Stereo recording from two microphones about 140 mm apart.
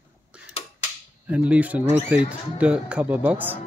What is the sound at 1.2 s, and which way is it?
Speech, 10° right (ahead or behind).